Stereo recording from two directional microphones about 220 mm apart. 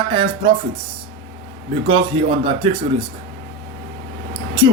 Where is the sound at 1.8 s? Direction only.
25° right (ahead or behind).